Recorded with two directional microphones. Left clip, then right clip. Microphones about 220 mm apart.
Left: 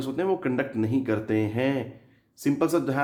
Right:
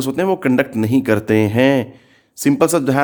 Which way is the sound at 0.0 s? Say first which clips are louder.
Right 9 dB; 50° right (ahead or behind).